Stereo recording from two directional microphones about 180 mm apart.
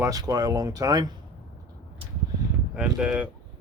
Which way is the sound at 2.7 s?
5° right (ahead or behind).